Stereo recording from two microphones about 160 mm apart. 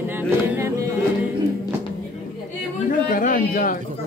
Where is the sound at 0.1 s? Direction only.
15° right (ahead or behind).